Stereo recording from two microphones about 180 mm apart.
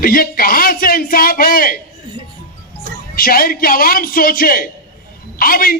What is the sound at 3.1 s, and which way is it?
A man's voice, 55° left (ahead or behind).